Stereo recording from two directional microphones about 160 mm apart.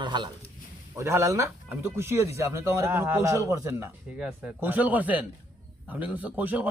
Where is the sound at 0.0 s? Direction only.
30° right (ahead or behind).